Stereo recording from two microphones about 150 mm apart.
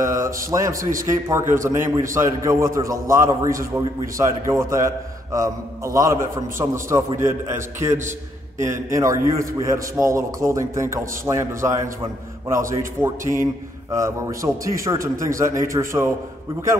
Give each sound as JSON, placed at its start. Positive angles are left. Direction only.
{"t": 0.0, "sound": "a man's voice", "side_deg": -20}